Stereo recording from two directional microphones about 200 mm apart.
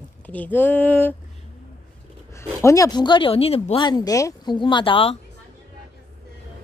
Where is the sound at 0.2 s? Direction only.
10° left (ahead or behind).